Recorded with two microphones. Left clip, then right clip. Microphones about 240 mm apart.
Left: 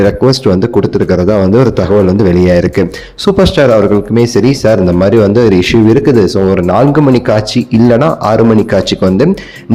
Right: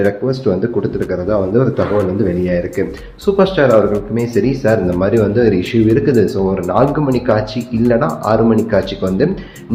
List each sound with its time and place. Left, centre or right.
0.0 s speech: left